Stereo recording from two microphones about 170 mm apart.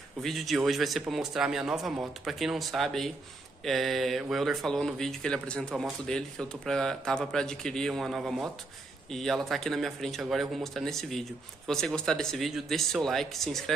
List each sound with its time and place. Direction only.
0.2 s speech: centre (ahead or behind)